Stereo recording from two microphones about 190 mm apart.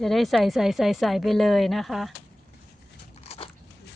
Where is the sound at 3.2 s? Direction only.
35° left (ahead or behind).